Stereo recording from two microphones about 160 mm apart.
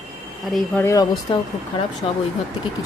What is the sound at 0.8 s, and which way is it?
Speech, 20° left (ahead or behind).